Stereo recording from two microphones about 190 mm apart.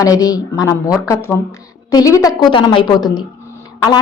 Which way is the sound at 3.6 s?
20° left (ahead or behind).